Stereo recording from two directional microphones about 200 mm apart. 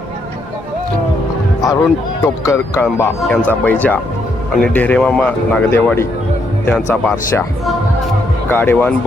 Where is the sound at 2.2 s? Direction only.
15° left (ahead or behind).